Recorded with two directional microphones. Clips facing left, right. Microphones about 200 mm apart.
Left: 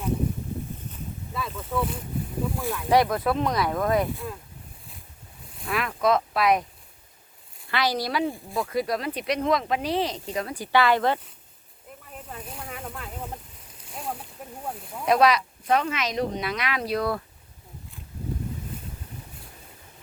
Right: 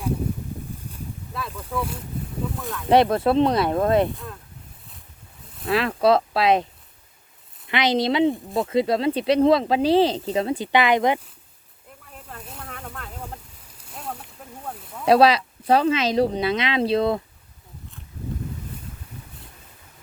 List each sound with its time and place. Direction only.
1.3 s boat: centre (ahead or behind)
2.9 s speech: 25° right (ahead or behind)
5.6 s speech: 30° right (ahead or behind)
7.7 s speech: 20° right (ahead or behind)
12.1 s snake: 5° left (ahead or behind)
13.9 s a sound: 5° left (ahead or behind)
14.4 s snake: 10° left (ahead or behind)
15.0 s speech: 30° right (ahead or behind)